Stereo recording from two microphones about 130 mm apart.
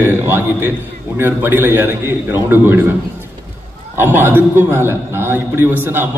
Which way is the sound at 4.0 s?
15° right (ahead or behind).